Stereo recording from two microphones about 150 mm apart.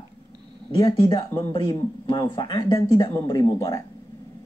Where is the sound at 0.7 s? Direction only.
35° left (ahead or behind).